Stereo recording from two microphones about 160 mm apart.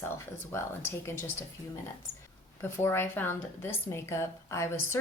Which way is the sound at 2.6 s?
15° left (ahead or behind).